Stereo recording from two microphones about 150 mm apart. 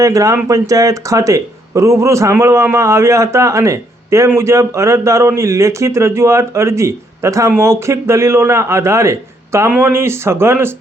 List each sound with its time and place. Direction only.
0.0 s speech: 20° right (ahead or behind)